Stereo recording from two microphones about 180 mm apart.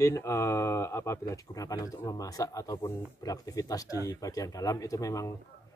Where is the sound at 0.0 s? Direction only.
15° left (ahead or behind).